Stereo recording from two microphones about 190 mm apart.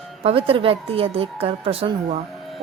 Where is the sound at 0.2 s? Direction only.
30° right (ahead or behind).